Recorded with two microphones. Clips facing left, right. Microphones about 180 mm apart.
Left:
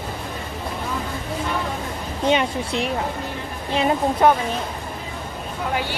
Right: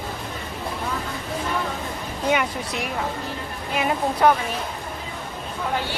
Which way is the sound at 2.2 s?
25° left (ahead or behind).